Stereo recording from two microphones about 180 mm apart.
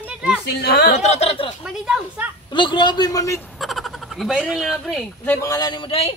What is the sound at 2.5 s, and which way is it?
Speech, 25° left (ahead or behind).